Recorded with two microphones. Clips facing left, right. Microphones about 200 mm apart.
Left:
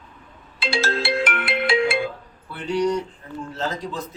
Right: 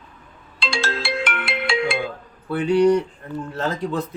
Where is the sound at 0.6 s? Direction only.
5° left (ahead or behind).